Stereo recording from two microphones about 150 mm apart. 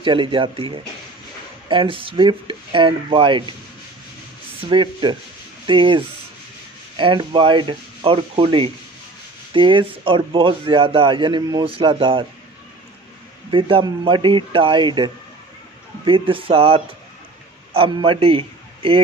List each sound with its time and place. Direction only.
0.0 s a man's voice: 35° right (ahead or behind)
4.6 s a man's voice: 35° right (ahead or behind)
13.5 s a man's voice: 35° right (ahead or behind)